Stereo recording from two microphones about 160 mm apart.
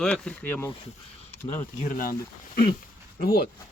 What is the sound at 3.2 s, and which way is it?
Speech, 75° left (ahead or behind).